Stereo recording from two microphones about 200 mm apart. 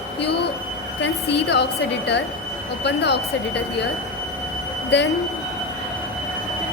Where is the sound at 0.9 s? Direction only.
60° left (ahead or behind).